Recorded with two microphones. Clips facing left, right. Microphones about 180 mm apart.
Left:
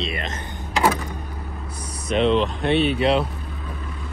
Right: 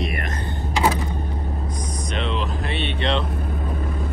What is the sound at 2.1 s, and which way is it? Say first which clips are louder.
Speech: left 9 dB; centre (ahead or behind).